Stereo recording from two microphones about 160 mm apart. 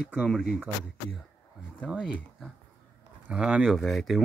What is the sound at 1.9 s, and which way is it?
Speech, 5° right (ahead or behind).